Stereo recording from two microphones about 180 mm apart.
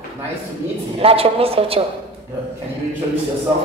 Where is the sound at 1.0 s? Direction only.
30° right (ahead or behind).